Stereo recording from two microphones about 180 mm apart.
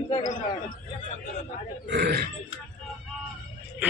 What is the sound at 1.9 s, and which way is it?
Speech, 60° right (ahead or behind).